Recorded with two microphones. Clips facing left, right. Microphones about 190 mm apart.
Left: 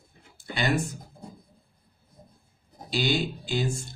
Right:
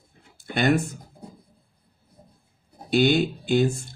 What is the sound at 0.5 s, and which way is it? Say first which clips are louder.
Speech: right 6 dB; 55° right (ahead or behind).